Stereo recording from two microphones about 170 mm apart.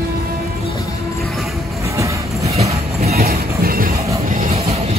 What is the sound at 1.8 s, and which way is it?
Music, 15° right (ahead or behind).